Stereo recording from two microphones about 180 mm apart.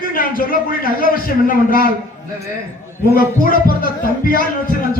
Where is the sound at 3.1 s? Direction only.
50° left (ahead or behind).